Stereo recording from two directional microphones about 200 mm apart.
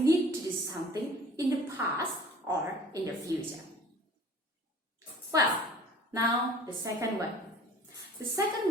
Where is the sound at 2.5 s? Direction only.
15° right (ahead or behind).